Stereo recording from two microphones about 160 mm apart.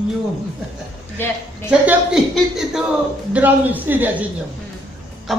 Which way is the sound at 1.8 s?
5° right (ahead or behind).